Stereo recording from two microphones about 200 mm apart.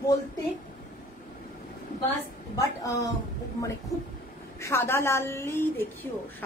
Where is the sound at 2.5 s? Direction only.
15° left (ahead or behind).